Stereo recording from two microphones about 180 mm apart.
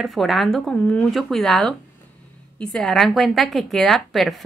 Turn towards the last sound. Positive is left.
turn(degrees=0)  # may be behind; listen again after turning